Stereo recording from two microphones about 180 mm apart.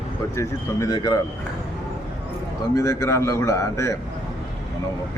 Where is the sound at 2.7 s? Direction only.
20° left (ahead or behind).